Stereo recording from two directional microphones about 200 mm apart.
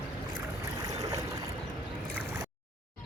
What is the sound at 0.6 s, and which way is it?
Boat, 15° right (ahead or behind).